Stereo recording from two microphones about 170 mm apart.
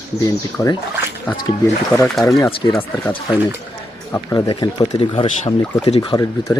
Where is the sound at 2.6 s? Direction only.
25° left (ahead or behind).